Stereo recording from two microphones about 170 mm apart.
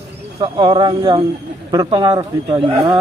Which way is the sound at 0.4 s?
25° right (ahead or behind).